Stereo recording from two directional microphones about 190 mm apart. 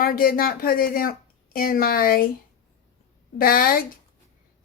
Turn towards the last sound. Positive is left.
turn(degrees=50)  # may be behind; listen again after turning